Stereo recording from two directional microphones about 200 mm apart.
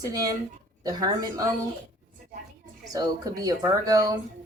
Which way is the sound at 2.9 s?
20° right (ahead or behind).